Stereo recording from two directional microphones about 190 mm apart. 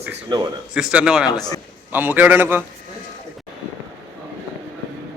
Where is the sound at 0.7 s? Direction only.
5° right (ahead or behind).